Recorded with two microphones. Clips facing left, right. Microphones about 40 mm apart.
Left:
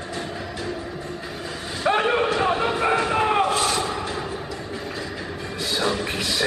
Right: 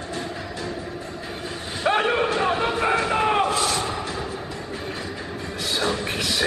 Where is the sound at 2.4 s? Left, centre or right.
Centre.